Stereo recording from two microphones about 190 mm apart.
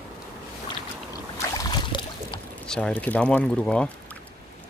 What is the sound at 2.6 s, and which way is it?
Speech, 5° left (ahead or behind).